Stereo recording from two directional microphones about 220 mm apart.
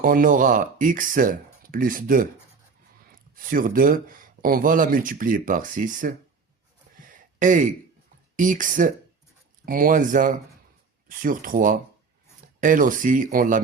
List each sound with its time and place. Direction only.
0.0 s speech: 40° right (ahead or behind)
3.3 s speech: 40° right (ahead or behind)
6.9 s a sound: 40° right (ahead or behind)
8.4 s speech: 35° right (ahead or behind)